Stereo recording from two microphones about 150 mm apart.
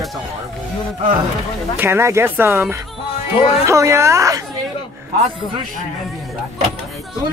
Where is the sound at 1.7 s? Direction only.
15° right (ahead or behind).